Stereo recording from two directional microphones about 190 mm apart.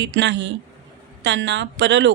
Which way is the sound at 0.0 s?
65° right (ahead or behind).